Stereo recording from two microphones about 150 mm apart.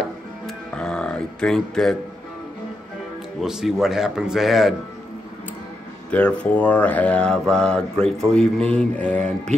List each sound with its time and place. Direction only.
0.7 s grunt: 5° left (ahead or behind)
3.3 s speech: centre (ahead or behind)
6.0 s speech: 10° left (ahead or behind)